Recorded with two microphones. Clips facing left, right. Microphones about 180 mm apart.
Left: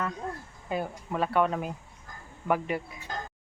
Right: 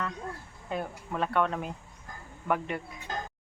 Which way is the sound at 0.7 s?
5° left (ahead or behind).